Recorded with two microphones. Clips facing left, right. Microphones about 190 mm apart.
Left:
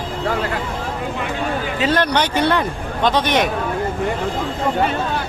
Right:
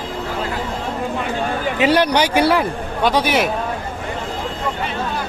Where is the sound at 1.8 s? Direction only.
10° right (ahead or behind).